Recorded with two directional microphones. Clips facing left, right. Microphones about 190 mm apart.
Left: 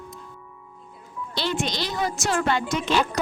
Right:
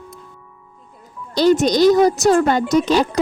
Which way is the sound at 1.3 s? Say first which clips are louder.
Right 13 dB; 40° right (ahead or behind).